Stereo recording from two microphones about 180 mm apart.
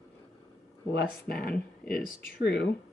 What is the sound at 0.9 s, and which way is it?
Speech, 60° left (ahead or behind).